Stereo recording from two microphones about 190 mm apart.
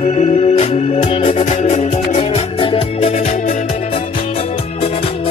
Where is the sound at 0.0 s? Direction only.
35° left (ahead or behind).